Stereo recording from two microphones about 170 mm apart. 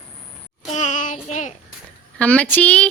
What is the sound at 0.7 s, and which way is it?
Child singing, 45° left (ahead or behind).